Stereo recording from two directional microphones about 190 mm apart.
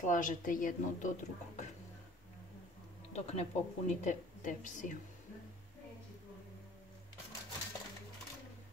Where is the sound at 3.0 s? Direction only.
35° left (ahead or behind).